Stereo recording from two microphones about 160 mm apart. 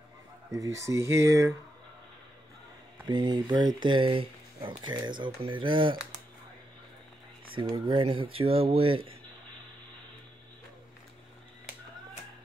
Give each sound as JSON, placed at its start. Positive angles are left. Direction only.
{"t": 0.5, "sound": "speech", "side_deg": -20}
{"t": 3.1, "sound": "speech", "side_deg": -25}
{"t": 7.5, "sound": "speech", "side_deg": -30}